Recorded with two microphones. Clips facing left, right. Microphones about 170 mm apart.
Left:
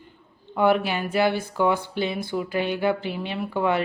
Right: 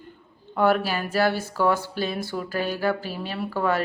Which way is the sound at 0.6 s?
15° left (ahead or behind).